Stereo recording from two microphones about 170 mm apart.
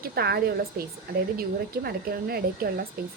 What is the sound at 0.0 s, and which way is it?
Speech, 65° right (ahead or behind).